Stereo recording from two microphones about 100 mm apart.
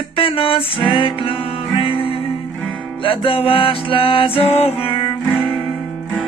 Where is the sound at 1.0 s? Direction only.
60° left (ahead or behind).